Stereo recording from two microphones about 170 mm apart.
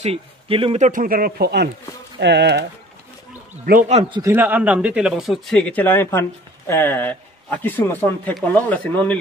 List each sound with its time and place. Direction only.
0.0 s speech: 35° right (ahead or behind); by 1.7 s 70° right (ahead or behind)
2.1 s speech: 85° right
4.1 s speech: 15° right (ahead or behind); by 9.2 s 10° left (ahead or behind)